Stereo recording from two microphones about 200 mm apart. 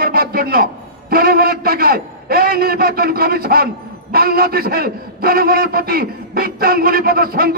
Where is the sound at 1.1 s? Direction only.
50° right (ahead or behind).